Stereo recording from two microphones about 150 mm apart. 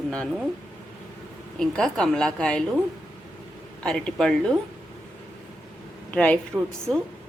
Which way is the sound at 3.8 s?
5° left (ahead or behind).